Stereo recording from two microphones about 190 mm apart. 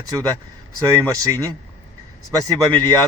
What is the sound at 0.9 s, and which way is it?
Speech, 15° right (ahead or behind).